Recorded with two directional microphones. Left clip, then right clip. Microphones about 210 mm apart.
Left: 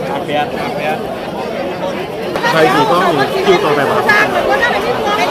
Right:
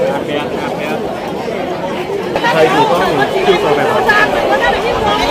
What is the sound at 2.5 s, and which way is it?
Speech, 40° left (ahead or behind).